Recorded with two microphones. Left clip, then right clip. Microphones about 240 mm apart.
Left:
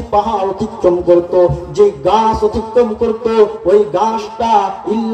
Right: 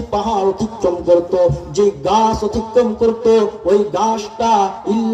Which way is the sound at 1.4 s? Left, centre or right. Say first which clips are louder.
Left 4 dB; right.